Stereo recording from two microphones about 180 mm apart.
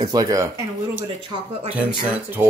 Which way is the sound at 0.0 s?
20° right (ahead or behind).